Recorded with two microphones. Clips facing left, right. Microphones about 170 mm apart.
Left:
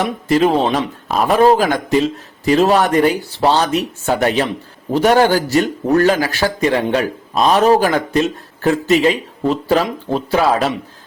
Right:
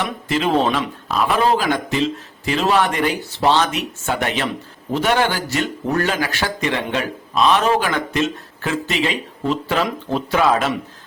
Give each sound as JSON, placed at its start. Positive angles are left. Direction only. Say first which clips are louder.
{"t": 0.0, "sound": "speech", "louder": "left 7 dB", "side_deg": 40}